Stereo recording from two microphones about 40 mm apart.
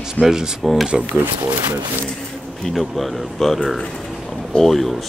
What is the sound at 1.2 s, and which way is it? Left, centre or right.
Speech, right.